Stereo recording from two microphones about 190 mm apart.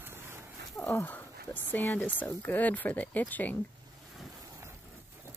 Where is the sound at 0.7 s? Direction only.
15° left (ahead or behind).